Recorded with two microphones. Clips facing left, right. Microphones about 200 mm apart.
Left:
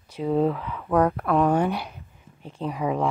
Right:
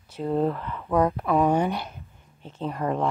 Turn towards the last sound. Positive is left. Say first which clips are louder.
# left 1 dB
turn(degrees=5)  # may be behind; listen again after turning